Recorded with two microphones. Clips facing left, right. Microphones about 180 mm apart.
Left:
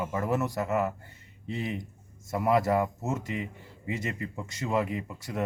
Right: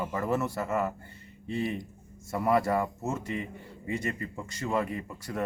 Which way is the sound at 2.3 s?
5° left (ahead or behind).